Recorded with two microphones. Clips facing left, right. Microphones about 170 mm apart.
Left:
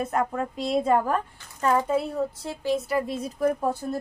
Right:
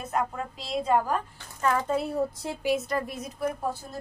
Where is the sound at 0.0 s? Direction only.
55° left (ahead or behind).